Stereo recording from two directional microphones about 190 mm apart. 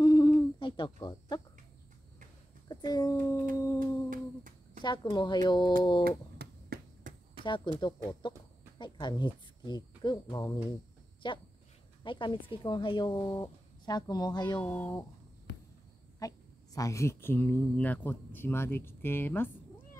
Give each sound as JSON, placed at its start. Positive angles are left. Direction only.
{"t": 0.0, "sound": "hoot", "side_deg": 20}
{"t": 2.7, "sound": "a child's voice", "side_deg": 20}
{"t": 3.5, "sound": "a sound", "side_deg": 15}
{"t": 4.1, "sound": "humming", "side_deg": -45}
{"t": 5.1, "sound": "speech", "side_deg": 25}
{"t": 6.0, "sound": "a sound", "side_deg": -55}
{"t": 7.4, "sound": "speech", "side_deg": 25}
{"t": 14.6, "sound": "speech", "side_deg": 10}
{"t": 16.2, "sound": "speech", "side_deg": 20}